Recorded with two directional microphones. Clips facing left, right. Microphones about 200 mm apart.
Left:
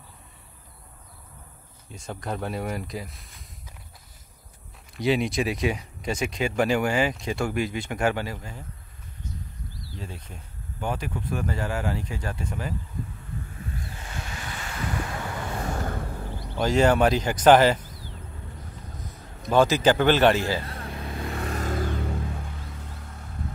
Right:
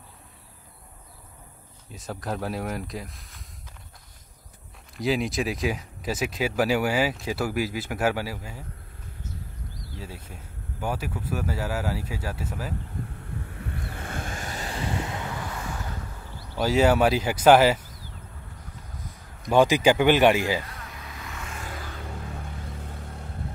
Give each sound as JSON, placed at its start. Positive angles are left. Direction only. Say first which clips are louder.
{"t": 1.9, "sound": "speech", "louder": "right 1 dB", "side_deg": 0}
{"t": 4.9, "sound": "speech", "louder": "left 2 dB", "side_deg": 0}
{"t": 9.9, "sound": "speech", "louder": "left 1 dB", "side_deg": -5}
{"t": 13.6, "sound": "vehicle", "louder": "right 2 dB", "side_deg": -60}
{"t": 15.5, "sound": "vehicle", "louder": "left 5 dB", "side_deg": 45}
{"t": 16.5, "sound": "speech", "louder": "even", "side_deg": -5}
{"t": 19.5, "sound": "speech", "louder": "right 1 dB", "side_deg": -15}
{"t": 20.6, "sound": "vehicle", "louder": "left 7 dB", "side_deg": 30}